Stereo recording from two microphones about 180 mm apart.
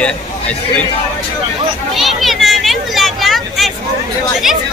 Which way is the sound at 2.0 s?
Centre (ahead or behind).